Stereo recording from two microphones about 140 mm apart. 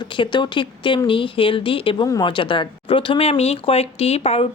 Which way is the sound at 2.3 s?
35° left (ahead or behind).